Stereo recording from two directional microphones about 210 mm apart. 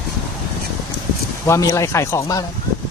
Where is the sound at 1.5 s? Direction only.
15° left (ahead or behind).